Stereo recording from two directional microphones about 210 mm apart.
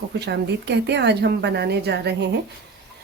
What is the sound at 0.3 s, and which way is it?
Speech, 55° right (ahead or behind).